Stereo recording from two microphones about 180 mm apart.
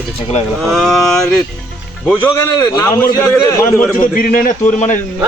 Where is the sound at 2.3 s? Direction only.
15° left (ahead or behind).